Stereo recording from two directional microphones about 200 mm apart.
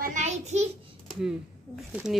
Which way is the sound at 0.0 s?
35° right (ahead or behind).